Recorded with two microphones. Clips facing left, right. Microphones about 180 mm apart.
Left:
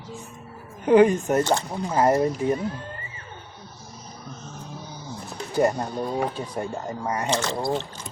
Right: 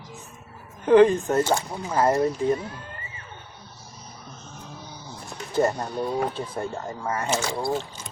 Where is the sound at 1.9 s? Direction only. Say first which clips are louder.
Left 1 dB; 20° left (ahead or behind).